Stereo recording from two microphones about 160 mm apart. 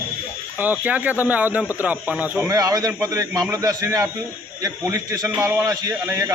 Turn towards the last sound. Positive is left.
turn(degrees=-20)  # may be behind; listen again after turning